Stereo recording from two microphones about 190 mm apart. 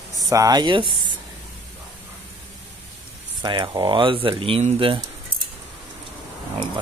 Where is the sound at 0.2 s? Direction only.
20° right (ahead or behind).